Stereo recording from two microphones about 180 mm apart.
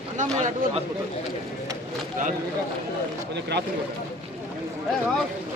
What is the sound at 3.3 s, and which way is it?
Speech, 70° right (ahead or behind).